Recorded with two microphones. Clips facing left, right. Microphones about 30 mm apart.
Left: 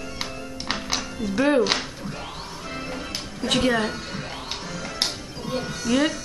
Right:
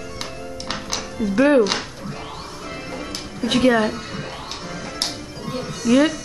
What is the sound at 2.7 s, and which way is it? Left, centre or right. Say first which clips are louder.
Music: right 1 dB; centre.